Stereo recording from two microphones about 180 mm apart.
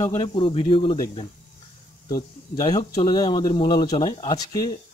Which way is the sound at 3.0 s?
25° left (ahead or behind).